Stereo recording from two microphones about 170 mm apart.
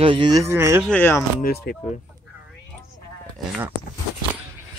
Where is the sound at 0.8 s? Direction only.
10° left (ahead or behind).